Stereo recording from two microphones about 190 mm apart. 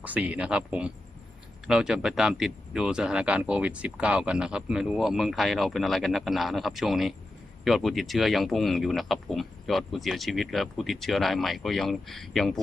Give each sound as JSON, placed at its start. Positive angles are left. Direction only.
{"t": 0.0, "sound": "speech", "side_deg": -10}